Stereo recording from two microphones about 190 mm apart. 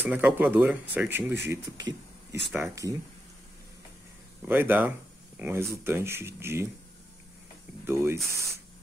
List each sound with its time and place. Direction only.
0.0 s speech: 10° right (ahead or behind)
4.4 s speech: 10° right (ahead or behind)
7.8 s speech: 15° right (ahead or behind)